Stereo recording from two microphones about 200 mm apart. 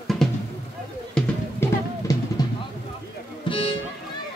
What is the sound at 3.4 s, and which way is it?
Music, 25° left (ahead or behind).